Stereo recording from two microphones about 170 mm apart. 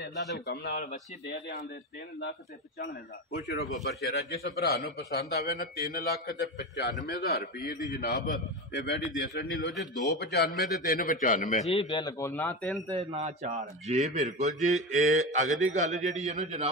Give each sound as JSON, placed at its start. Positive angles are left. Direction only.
{"t": 0.0, "sound": "a man's voice", "side_deg": 85}
{"t": 2.8, "sound": "a man's voice", "side_deg": 70}
{"t": 11.7, "sound": "speech", "side_deg": 30}
{"t": 12.3, "sound": "speech", "side_deg": 10}
{"t": 12.9, "sound": "speech", "side_deg": -40}
{"t": 14.1, "sound": "mantra", "side_deg": -45}